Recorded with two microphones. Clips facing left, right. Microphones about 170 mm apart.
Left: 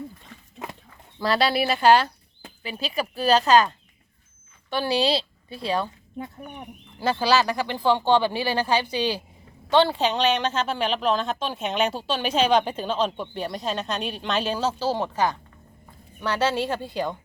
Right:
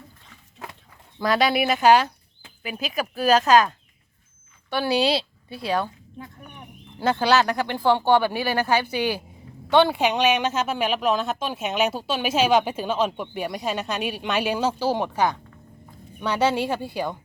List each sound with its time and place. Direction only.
1.2 s a woman's voice: 15° right (ahead or behind)
7.7 s speech: 15° right (ahead or behind)
8.4 s speech: 15° left (ahead or behind)
9.7 s speech: 15° right (ahead or behind)